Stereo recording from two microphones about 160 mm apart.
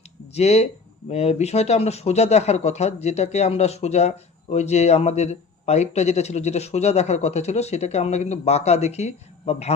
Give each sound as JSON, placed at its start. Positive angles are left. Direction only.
{"t": 0.3, "sound": "speech", "side_deg": 40}